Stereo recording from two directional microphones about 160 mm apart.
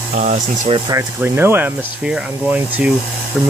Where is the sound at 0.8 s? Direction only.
15° right (ahead or behind).